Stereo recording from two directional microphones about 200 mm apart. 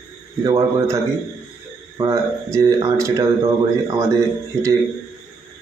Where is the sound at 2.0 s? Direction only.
15° right (ahead or behind).